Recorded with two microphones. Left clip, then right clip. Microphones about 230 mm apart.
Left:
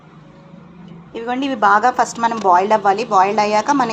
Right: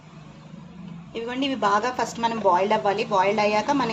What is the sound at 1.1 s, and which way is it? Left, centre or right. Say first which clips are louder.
A woman's voice: left 6 dB; centre.